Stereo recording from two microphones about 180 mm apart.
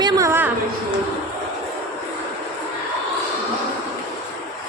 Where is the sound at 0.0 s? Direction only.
15° right (ahead or behind).